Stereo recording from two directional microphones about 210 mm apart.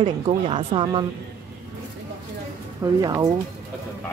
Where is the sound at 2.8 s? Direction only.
15° right (ahead or behind).